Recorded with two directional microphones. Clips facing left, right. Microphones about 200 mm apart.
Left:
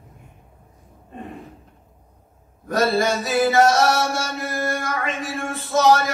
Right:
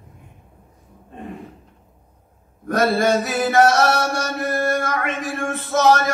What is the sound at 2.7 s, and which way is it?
Mantra, 55° right (ahead or behind).